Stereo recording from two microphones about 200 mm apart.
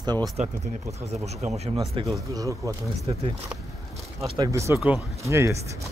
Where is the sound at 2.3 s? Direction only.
15° right (ahead or behind).